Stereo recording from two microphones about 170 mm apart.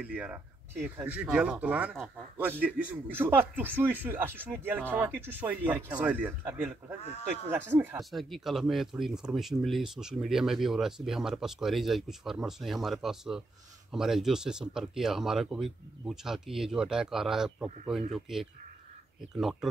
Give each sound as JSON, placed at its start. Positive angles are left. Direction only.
{"t": 0.0, "sound": "a man's voice", "side_deg": -10}
{"t": 8.0, "sound": "speech", "side_deg": 0}